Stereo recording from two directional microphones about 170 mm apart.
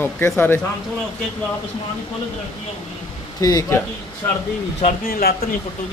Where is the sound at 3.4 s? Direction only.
20° left (ahead or behind).